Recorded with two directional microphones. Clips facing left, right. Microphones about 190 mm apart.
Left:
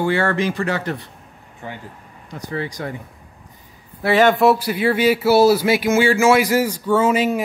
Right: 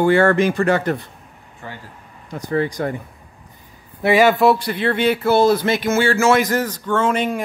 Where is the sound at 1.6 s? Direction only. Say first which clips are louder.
Left 2 dB; 20° left (ahead or behind).